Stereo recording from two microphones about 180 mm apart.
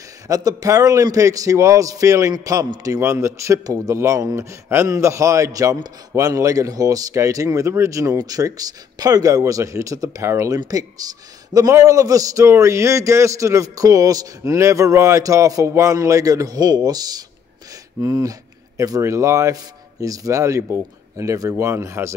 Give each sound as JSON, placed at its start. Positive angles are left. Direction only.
{"t": 0.3, "sound": "a man's voice", "side_deg": -20}